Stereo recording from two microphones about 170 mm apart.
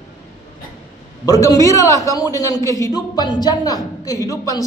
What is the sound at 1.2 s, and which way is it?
Speech, 20° left (ahead or behind).